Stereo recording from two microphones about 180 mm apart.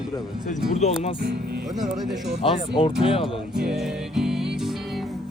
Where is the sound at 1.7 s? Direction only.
Centre (ahead or behind).